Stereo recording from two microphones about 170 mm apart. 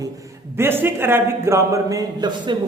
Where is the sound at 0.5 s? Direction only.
15° right (ahead or behind).